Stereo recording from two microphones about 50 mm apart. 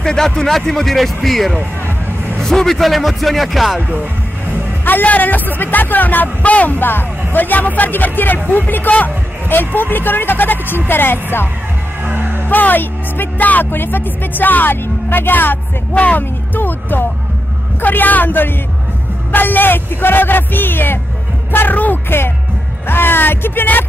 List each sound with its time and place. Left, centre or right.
0.0 s speech: centre
4.8 s a man's voice: left
12.0 s music: right
12.4 s speech: left
13.7 s a man's voice: left
15.9 s speech: left
16.2 s a man's voice: left